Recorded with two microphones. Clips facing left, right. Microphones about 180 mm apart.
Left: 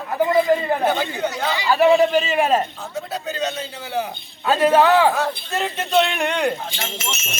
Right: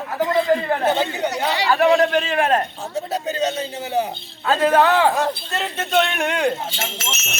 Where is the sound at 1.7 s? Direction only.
Centre (ahead or behind).